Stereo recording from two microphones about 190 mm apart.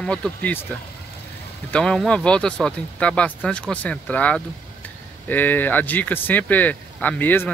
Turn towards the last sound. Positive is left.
turn(degrees=10)  # may be behind; listen again after turning